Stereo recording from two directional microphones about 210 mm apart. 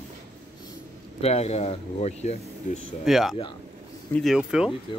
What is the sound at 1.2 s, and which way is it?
Speech, 30° left (ahead or behind).